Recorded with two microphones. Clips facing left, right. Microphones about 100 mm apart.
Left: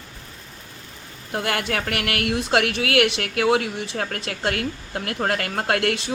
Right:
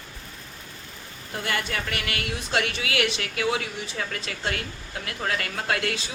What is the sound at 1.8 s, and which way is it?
Speech, 65° left (ahead or behind).